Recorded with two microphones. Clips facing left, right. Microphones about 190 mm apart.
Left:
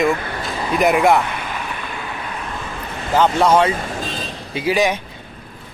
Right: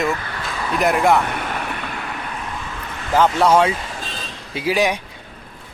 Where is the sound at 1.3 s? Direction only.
60° right (ahead or behind).